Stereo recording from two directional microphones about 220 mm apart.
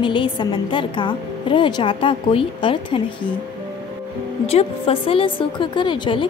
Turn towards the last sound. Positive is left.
turn(degrees=20)  # may be behind; listen again after turning